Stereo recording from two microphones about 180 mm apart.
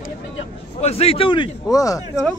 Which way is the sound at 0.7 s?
35° left (ahead or behind).